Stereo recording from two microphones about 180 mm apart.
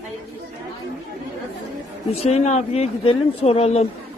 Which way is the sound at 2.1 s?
35° left (ahead or behind).